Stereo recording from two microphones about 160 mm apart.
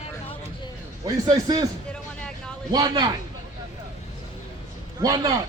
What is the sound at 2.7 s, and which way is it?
Speech, 25° right (ahead or behind).